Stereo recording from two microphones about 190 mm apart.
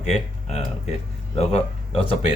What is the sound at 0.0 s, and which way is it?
Speech, 35° left (ahead or behind).